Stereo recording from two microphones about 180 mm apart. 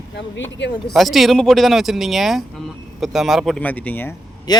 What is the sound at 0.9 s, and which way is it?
Speech, centre (ahead or behind).